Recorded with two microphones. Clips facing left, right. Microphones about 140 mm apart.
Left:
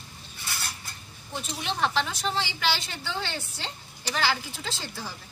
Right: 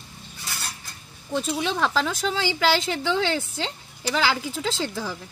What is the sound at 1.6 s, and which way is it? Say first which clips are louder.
A woman's voice: right 1 dB; 90° right.